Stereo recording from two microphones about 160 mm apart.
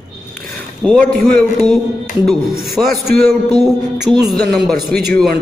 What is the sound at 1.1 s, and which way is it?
Speech, 65° right (ahead or behind).